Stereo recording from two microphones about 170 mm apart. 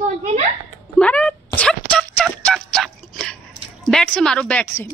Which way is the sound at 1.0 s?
10° left (ahead or behind).